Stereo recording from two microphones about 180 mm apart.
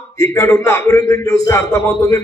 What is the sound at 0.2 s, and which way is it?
A man's voice, 15° left (ahead or behind).